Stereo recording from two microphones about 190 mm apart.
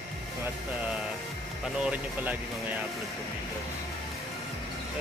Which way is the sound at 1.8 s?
10° right (ahead or behind).